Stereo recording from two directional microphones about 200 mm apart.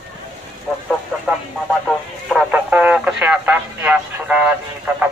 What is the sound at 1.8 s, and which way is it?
Radio, 5° right (ahead or behind).